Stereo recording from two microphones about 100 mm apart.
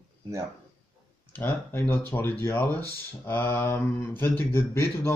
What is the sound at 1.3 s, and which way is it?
Speech, 15° left (ahead or behind).